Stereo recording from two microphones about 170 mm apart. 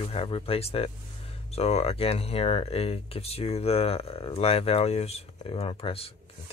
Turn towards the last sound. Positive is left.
turn(degrees=35)  # may be behind; listen again after turning